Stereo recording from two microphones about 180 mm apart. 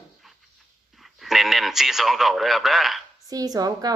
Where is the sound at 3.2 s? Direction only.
20° right (ahead or behind).